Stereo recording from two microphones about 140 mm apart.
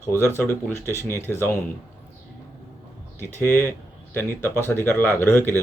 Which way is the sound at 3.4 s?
15° left (ahead or behind).